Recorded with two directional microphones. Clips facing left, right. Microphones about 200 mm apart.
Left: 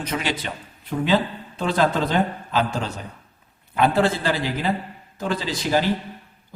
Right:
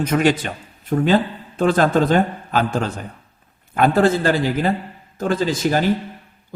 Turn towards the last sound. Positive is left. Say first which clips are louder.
# right 4 dB
turn(degrees=-50)  # may be behind; listen again after turning